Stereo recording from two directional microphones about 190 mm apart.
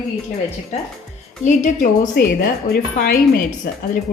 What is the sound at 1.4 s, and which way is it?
Speech, 45° left (ahead or behind).